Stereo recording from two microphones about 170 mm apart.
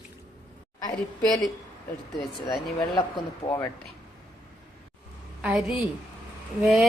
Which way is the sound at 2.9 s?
25° left (ahead or behind).